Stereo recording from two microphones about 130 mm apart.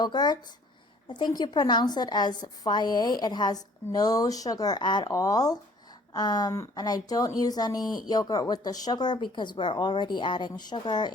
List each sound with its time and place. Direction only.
0.0 s a woman's voice: 35° left (ahead or behind)